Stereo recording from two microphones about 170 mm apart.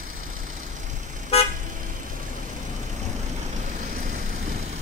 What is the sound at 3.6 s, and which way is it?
Vehicle, 45° right (ahead or behind).